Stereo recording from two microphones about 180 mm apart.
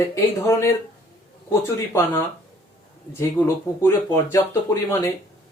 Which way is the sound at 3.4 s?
10° left (ahead or behind).